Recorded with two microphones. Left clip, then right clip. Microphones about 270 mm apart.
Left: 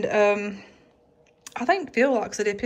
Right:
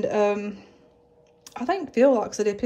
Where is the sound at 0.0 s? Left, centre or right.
Centre.